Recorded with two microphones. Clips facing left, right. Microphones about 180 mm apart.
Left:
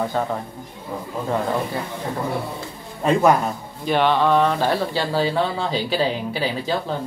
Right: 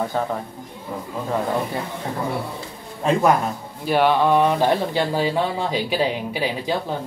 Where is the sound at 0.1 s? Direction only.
Centre (ahead or behind).